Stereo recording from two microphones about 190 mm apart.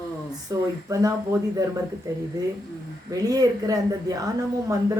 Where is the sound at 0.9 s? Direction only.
20° right (ahead or behind).